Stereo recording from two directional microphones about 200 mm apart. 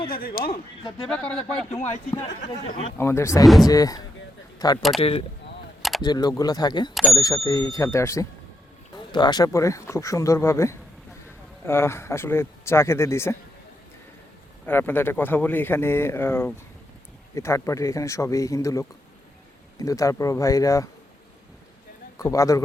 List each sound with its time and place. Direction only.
0.1 s speech: 50° left (ahead or behind)
1.0 s speech: 5° left (ahead or behind)
1.7 s a man's voice: 35° left (ahead or behind)
3.0 s speech: 15° left (ahead or behind)
3.4 s speech: centre (ahead or behind)
3.7 s speech: 20° left (ahead or behind)
4.9 s speech: 30° left (ahead or behind); by 13.3 s 15° left (ahead or behind)
14.7 s speech: 10° left (ahead or behind)
22.2 s speech: 15° left (ahead or behind)